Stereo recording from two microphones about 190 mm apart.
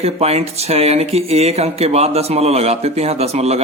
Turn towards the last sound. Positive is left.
turn(degrees=-35)  # may be behind; listen again after turning